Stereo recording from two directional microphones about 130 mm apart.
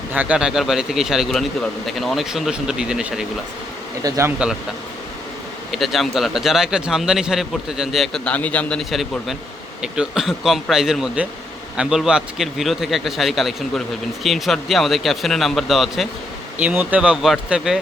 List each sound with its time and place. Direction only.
0.1 s a man's voice: 10° right (ahead or behind)
4.0 s speech: 25° right (ahead or behind)
4.4 s speech: 10° right (ahead or behind)
5.7 s a man's voice: centre (ahead or behind)